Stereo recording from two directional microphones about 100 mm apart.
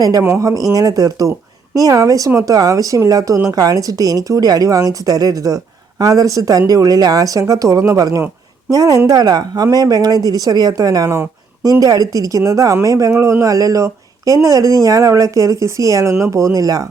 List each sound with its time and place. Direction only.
0.0 s speech: 35° right (ahead or behind)